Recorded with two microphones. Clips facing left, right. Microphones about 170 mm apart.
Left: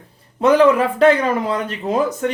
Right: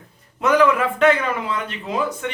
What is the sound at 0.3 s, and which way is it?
Speech, 30° left (ahead or behind).